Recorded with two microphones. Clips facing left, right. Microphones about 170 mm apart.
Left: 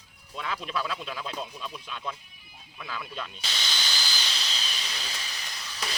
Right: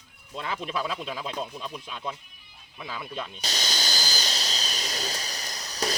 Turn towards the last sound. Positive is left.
turn(degrees=-40)  # may be behind; listen again after turning